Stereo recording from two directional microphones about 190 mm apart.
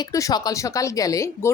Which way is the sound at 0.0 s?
20° left (ahead or behind).